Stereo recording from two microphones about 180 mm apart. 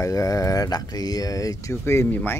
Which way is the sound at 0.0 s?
20° left (ahead or behind).